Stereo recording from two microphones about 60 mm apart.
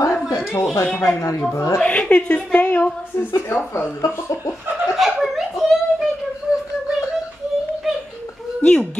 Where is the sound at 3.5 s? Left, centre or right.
Left.